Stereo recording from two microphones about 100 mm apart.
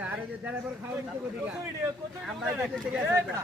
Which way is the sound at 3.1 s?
25° right (ahead or behind).